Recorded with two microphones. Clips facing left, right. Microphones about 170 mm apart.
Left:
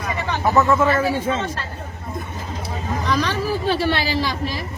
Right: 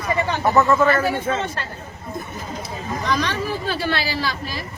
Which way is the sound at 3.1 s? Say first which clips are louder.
Left 1 dB; 5° left (ahead or behind).